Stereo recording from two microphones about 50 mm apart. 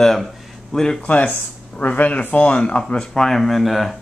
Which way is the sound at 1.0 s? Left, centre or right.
Left.